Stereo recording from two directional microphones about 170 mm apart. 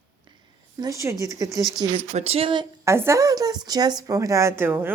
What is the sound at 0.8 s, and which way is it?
Speech, 20° right (ahead or behind).